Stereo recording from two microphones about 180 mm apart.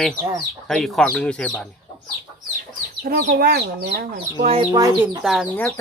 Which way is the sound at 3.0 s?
55° right (ahead or behind).